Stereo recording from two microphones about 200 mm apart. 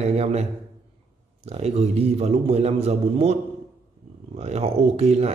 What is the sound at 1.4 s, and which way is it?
Speech, 30° right (ahead or behind).